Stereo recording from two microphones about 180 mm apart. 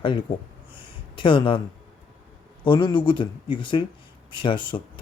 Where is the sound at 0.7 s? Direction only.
30° left (ahead or behind).